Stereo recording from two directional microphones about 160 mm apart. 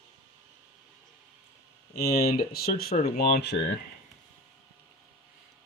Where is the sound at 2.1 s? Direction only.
70° left (ahead or behind).